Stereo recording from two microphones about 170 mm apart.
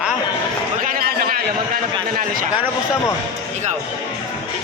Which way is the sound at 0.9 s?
55° right (ahead or behind).